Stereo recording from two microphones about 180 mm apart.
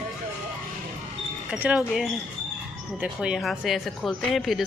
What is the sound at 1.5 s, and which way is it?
Speech, 5° right (ahead or behind).